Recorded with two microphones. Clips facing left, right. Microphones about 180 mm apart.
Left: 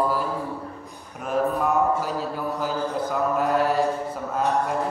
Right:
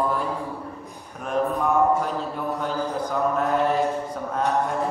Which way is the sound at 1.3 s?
5° left (ahead or behind).